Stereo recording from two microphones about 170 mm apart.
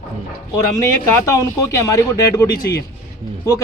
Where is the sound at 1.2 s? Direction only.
20° left (ahead or behind).